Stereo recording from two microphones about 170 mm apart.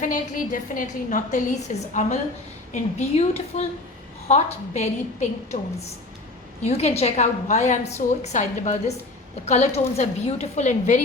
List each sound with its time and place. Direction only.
0.0 s a woman's voice: 50° left (ahead or behind)
3.2 s a woman's voice: 40° left (ahead or behind)
6.6 s a woman's voice: 40° left (ahead or behind)